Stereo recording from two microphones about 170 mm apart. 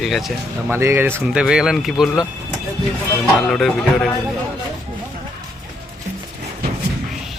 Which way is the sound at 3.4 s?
Centre (ahead or behind).